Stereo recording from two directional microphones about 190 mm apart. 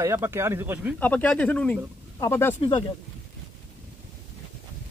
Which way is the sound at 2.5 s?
30° left (ahead or behind).